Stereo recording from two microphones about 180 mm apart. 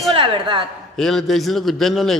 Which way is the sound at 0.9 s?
Centre (ahead or behind).